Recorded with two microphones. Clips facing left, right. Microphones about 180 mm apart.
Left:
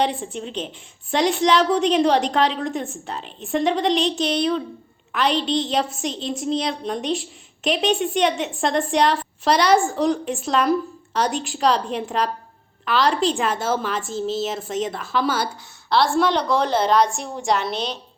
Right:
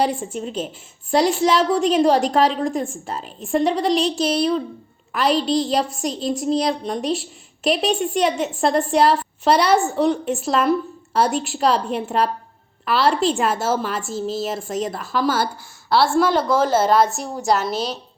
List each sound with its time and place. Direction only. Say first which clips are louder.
0.3 s a woman's voice: right 3 dB; 5° right (ahead or behind)
5.5 s a woman's voice: right 3 dB; 40° right (ahead or behind)
6.1 s a woman's voice: right 4 dB; centre (ahead or behind)
6.4 s speech: right 3 dB; 45° right (ahead or behind)
6.8 s a woman's voice: right 1 dB; centre (ahead or behind)
14.7 s speech: even; 45° right (ahead or behind)
15.9 s a woman's voice: right 2 dB; 5° right (ahead or behind)